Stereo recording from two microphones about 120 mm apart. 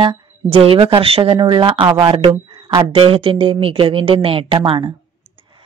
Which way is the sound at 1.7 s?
45° right (ahead or behind).